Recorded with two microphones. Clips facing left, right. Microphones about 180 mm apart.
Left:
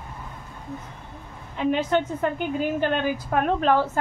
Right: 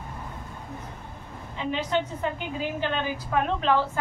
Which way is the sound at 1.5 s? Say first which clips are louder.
Left 5 dB; 50° left (ahead or behind).